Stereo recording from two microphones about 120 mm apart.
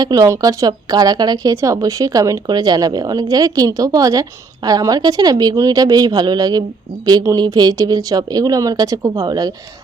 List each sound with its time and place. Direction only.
0.0 s speech: 30° right (ahead or behind)